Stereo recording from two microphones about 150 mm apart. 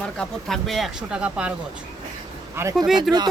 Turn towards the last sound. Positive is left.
turn(degrees=0)  # may be behind; listen again after turning